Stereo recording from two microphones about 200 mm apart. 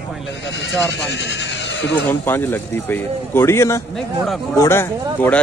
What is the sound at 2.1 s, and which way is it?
A man's voice, 10° left (ahead or behind).